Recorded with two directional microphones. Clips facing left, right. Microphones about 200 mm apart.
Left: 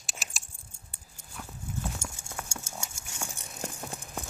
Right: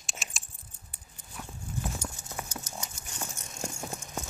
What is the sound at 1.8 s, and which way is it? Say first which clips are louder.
Clip-clop: right 2 dB; 5° right (ahead or behind).